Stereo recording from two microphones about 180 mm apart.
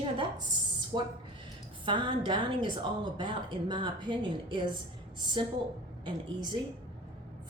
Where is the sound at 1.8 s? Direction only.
25° right (ahead or behind).